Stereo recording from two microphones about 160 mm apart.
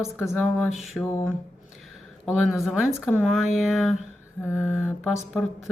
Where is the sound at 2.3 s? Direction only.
Centre (ahead or behind).